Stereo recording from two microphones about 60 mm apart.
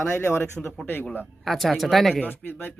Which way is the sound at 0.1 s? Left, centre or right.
Left.